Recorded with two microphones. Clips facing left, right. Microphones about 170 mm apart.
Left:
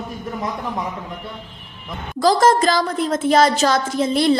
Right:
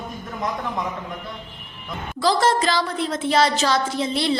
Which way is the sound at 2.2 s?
45° left (ahead or behind).